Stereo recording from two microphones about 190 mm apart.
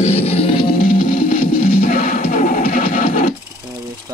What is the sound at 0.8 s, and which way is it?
Music, 45° left (ahead or behind).